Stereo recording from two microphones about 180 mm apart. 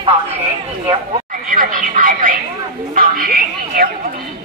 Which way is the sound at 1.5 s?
50° right (ahead or behind).